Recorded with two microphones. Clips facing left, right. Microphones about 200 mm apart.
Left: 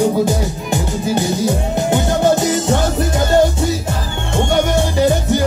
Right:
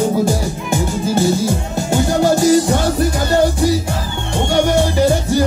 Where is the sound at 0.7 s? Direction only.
20° left (ahead or behind).